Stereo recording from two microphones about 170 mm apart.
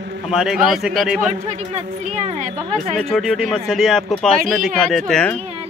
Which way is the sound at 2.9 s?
Centre (ahead or behind).